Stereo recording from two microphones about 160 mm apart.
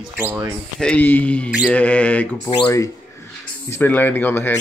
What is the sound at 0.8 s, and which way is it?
Speech, 10° left (ahead or behind).